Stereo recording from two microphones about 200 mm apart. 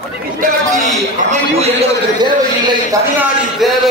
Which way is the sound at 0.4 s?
45° right (ahead or behind).